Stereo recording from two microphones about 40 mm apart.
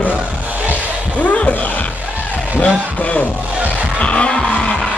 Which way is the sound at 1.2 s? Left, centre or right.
Left.